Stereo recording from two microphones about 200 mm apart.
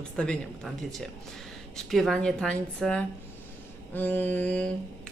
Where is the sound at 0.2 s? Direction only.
5° left (ahead or behind).